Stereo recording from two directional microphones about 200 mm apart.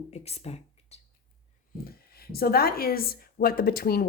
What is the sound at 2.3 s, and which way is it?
Speech, 50° left (ahead or behind).